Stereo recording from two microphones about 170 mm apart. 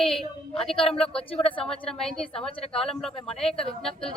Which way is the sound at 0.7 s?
35° left (ahead or behind).